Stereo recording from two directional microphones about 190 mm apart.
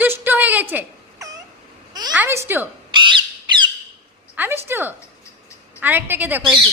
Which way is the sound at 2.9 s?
25° right (ahead or behind).